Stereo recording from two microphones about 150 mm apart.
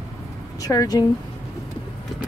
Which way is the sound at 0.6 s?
25° left (ahead or behind).